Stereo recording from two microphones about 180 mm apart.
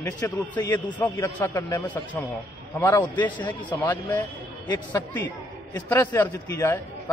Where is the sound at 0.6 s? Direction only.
20° left (ahead or behind).